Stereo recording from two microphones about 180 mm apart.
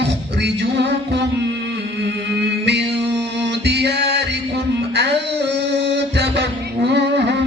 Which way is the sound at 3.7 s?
65° right (ahead or behind).